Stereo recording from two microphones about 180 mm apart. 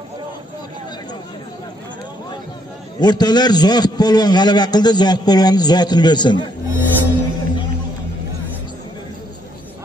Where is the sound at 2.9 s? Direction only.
25° left (ahead or behind).